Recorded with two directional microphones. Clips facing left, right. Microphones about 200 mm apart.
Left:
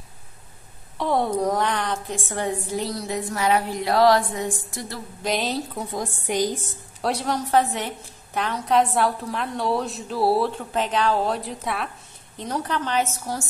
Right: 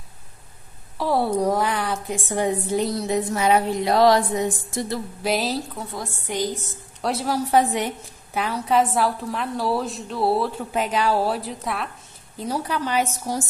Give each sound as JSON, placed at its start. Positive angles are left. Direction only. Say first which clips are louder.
{"t": 0.9, "sound": "a woman's voice", "louder": "right 1 dB", "side_deg": -5}
{"t": 3.0, "sound": "a sound", "louder": "right 4 dB", "side_deg": -20}
{"t": 5.2, "sound": "a woman's voice", "louder": "right 1 dB", "side_deg": -5}
{"t": 5.8, "sound": "a woman's voice", "louder": "left 3 dB", "side_deg": 15}
{"t": 7.0, "sound": "a woman's voice", "louder": "right 1 dB", "side_deg": 0}
{"t": 7.4, "sound": "a woman's voice", "louder": "right 2 dB", "side_deg": -15}